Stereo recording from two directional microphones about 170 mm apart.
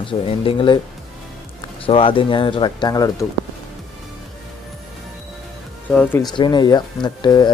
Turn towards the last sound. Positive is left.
turn(degrees=25)  # may be behind; listen again after turning